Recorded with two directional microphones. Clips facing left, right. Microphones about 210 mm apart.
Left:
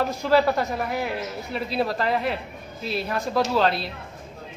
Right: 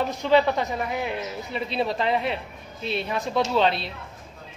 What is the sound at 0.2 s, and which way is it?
A man's voice, 5° left (ahead or behind).